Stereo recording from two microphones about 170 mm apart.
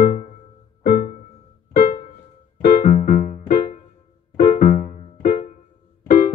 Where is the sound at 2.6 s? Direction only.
50° left (ahead or behind).